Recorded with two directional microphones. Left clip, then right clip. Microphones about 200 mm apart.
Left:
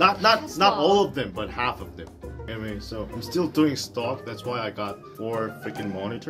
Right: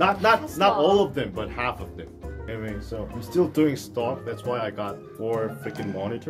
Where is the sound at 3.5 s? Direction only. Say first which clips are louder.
Even; 15° right (ahead or behind).